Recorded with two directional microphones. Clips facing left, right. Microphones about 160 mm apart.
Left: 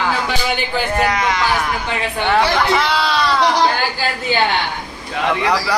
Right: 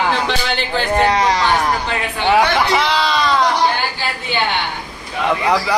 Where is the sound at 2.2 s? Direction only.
10° right (ahead or behind).